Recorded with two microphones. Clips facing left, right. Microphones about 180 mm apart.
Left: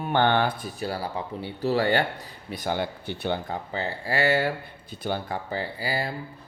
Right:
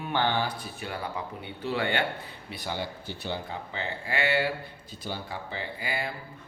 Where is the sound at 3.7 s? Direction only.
40° left (ahead or behind).